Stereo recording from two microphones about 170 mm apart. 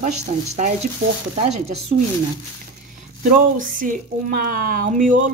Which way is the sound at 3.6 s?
50° right (ahead or behind).